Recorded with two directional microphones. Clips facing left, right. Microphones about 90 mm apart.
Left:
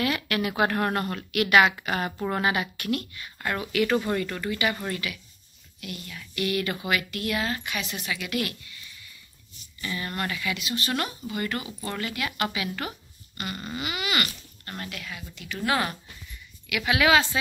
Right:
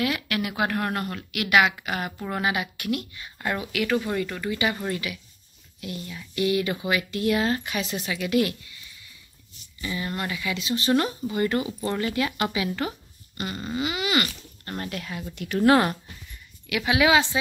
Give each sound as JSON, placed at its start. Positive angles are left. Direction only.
{"t": 0.0, "sound": "a woman's voice", "side_deg": -5}
{"t": 2.4, "sound": "speech", "side_deg": -5}
{"t": 3.7, "sound": "a woman's voice", "side_deg": 0}
{"t": 5.8, "sound": "speech", "side_deg": -25}
{"t": 9.8, "sound": "speech", "side_deg": -15}
{"t": 13.7, "sound": "speech", "side_deg": -25}
{"t": 15.3, "sound": "speech", "side_deg": -50}
{"t": 16.6, "sound": "speech", "side_deg": -25}